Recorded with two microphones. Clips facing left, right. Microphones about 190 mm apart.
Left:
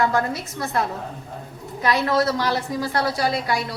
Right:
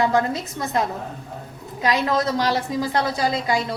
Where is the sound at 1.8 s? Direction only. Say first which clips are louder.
Left 1 dB; 15° right (ahead or behind).